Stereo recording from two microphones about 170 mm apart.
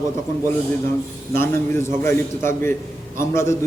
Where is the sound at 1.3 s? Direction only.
15° left (ahead or behind).